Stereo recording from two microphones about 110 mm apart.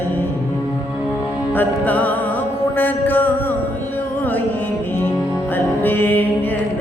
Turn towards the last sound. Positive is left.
turn(degrees=15)  # may be behind; listen again after turning